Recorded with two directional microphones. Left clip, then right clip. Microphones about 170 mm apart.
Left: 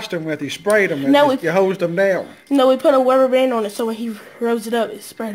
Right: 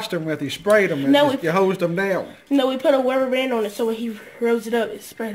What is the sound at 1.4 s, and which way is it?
Speech, centre (ahead or behind).